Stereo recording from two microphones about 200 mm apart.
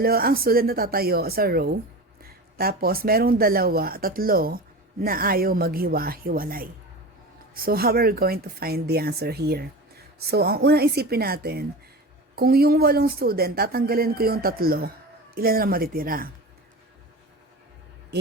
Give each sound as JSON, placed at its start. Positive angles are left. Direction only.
{"t": 0.0, "sound": "speech", "side_deg": -50}
{"t": 18.1, "sound": "hum", "side_deg": -55}